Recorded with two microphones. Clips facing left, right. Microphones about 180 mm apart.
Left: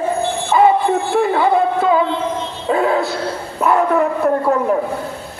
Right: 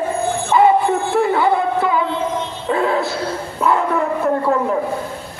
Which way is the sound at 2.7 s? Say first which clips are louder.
Left 2 dB; 20° left (ahead or behind).